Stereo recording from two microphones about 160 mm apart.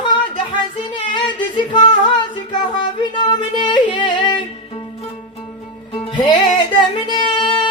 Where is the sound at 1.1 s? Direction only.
30° left (ahead or behind).